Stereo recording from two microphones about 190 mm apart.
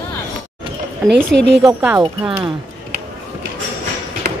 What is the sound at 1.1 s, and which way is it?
Speech, 10° right (ahead or behind).